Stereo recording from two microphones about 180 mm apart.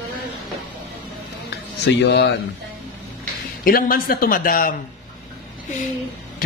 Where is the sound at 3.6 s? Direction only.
55° left (ahead or behind).